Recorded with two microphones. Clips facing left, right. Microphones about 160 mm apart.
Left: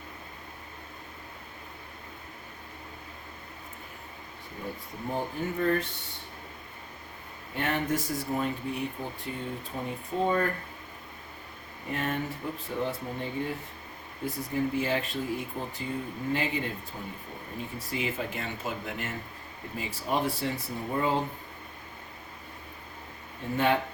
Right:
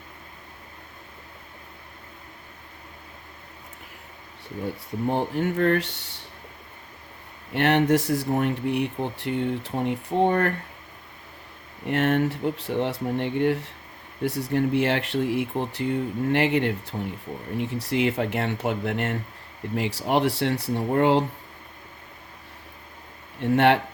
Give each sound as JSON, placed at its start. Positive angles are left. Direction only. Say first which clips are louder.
{"t": 5.1, "sound": "speech", "louder": "right 5 dB", "side_deg": -80}
{"t": 7.5, "sound": "speech", "louder": "right 9 dB", "side_deg": -75}
{"t": 11.9, "sound": "speech", "louder": "right 9 dB", "side_deg": -75}
{"t": 23.4, "sound": "speech", "louder": "right 8 dB", "side_deg": -75}